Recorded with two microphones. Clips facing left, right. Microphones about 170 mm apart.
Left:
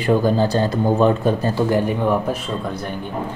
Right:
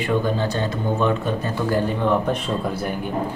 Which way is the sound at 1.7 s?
15° left (ahead or behind).